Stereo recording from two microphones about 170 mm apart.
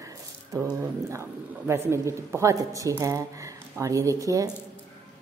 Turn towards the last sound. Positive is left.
turn(degrees=-20)  # may be behind; listen again after turning